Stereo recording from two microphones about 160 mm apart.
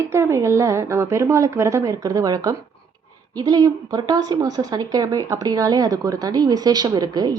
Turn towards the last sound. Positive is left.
turn(degrees=-25)  # may be behind; listen again after turning